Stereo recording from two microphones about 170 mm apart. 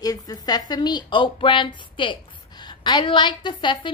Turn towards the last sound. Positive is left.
turn(degrees=25)  # may be behind; listen again after turning